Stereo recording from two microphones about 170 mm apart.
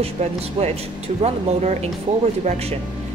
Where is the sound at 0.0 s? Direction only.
40° right (ahead or behind).